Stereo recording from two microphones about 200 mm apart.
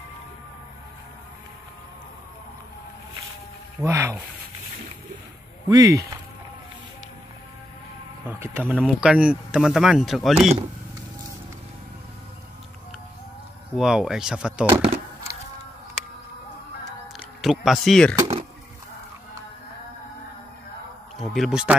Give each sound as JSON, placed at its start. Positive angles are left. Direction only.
{"t": 3.8, "sound": "speech", "side_deg": -15}
{"t": 5.7, "sound": "speech", "side_deg": -20}
{"t": 8.3, "sound": "speech", "side_deg": -10}
{"t": 13.7, "sound": "speech", "side_deg": -5}
{"t": 17.4, "sound": "speech", "side_deg": 0}
{"t": 18.2, "sound": "a sound", "side_deg": -35}
{"t": 21.2, "sound": "a man's voice", "side_deg": 0}